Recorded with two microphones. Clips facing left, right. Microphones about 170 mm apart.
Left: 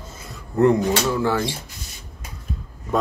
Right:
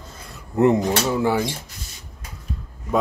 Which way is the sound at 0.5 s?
20° right (ahead or behind).